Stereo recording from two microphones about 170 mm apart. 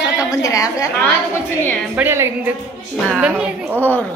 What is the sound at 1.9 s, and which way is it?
A woman's voice, 15° right (ahead or behind).